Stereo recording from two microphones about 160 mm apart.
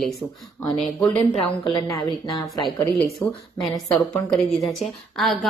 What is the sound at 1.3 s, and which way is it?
Speech, 35° left (ahead or behind).